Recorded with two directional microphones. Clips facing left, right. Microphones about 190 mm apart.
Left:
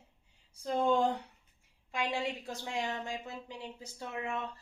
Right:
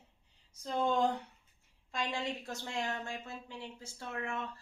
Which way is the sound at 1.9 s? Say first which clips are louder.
Left 2 dB; 10° left (ahead or behind).